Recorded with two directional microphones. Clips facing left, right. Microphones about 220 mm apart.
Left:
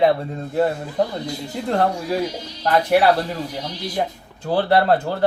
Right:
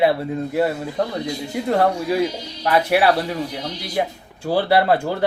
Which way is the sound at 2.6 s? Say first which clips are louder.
Left 1 dB; 5° right (ahead or behind).